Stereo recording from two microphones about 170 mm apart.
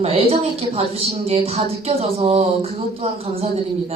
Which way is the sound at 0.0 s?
35° right (ahead or behind).